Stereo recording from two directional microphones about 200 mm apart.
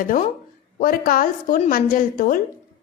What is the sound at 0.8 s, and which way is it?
A woman's voice, 45° left (ahead or behind).